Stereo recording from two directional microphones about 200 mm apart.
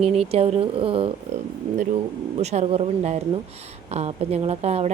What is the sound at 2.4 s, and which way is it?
Speech, 35° right (ahead or behind).